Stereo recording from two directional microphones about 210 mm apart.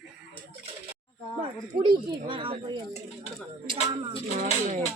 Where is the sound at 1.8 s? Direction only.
25° right (ahead or behind).